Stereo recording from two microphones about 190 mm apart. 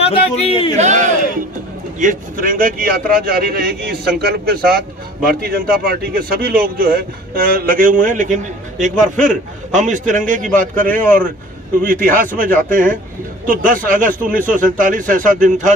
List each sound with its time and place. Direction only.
0.0 s speech: 30° left (ahead or behind)
0.7 s a man's voice: 40° right (ahead or behind)
10.5 s speech: 10° left (ahead or behind)
11.8 s a man's voice: 45° right (ahead or behind)